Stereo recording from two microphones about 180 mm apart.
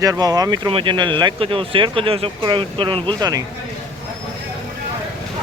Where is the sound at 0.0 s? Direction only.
20° right (ahead or behind).